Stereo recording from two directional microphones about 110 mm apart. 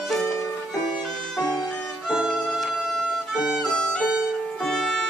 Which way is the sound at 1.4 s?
40° left (ahead or behind).